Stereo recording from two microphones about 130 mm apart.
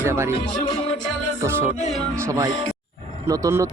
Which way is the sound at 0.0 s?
20° right (ahead or behind).